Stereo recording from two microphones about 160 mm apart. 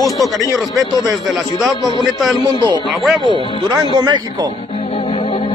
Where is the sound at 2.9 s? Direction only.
Centre (ahead or behind).